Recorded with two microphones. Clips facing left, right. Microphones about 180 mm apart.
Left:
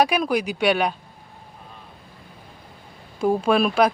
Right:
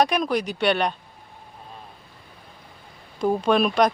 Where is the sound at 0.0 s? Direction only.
10° left (ahead or behind).